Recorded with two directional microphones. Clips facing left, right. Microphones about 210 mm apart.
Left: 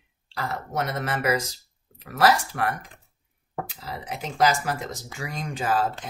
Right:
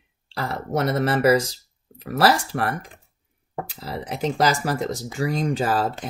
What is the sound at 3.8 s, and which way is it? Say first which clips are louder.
Speech: right 6 dB; 35° right (ahead or behind).